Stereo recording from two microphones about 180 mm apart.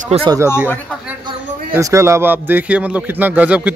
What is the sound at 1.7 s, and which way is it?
Speech, 15° right (ahead or behind).